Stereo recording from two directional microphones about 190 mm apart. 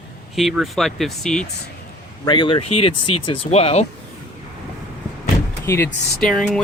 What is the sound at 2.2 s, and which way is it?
Speech, 25° left (ahead or behind).